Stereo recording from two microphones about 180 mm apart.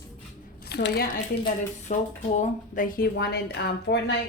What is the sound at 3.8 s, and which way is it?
Speech, 70° left (ahead or behind).